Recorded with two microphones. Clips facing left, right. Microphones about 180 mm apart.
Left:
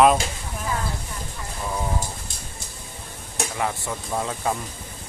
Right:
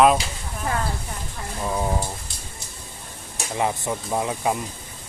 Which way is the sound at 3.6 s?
20° right (ahead or behind).